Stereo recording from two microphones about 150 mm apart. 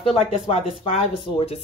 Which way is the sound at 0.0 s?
40° left (ahead or behind).